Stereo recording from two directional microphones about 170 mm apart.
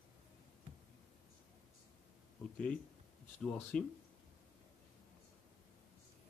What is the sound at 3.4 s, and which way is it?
Speech, 5° left (ahead or behind).